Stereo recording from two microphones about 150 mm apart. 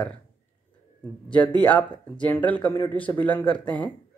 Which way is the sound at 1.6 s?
10° left (ahead or behind).